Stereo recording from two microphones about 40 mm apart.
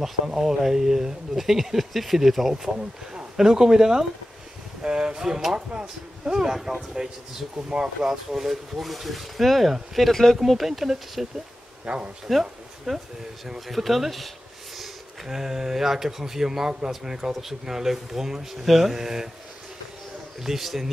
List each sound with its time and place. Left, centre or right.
0.3 s speech: centre
7.5 s speech: right
8.0 s speech: centre
11.8 s speech: right
12.3 s speech: centre
15.2 s speech: centre
20.4 s speech: centre